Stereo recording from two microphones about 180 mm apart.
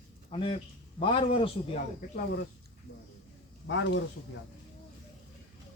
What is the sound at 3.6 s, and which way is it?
Speech, 85° left.